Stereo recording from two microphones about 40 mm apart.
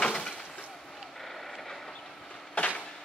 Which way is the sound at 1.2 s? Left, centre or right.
Centre.